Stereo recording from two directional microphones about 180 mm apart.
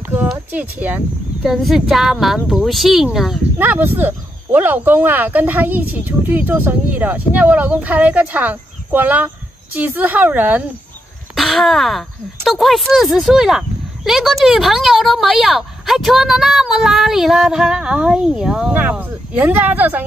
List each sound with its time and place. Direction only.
0.1 s speech: 10° right (ahead or behind)